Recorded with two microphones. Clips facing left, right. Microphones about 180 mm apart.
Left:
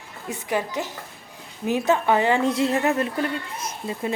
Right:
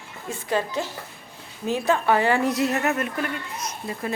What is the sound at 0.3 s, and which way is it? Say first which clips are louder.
A woman's voice: even; 15° left (ahead or behind).